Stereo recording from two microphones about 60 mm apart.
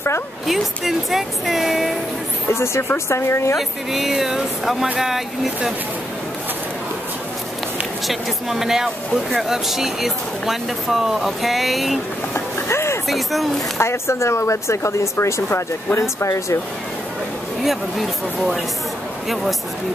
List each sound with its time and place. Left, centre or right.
0.5 s speech: centre
2.5 s speech: left
3.5 s speech: centre
8.1 s speech: centre
12.4 s a sound: left
13.1 s speech: centre
13.7 s speech: left
17.6 s speech: centre